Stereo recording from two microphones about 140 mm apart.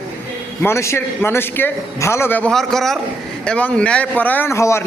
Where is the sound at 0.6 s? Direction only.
20° left (ahead or behind).